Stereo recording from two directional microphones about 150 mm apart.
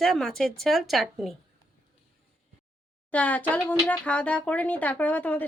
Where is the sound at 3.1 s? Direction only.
10° left (ahead or behind).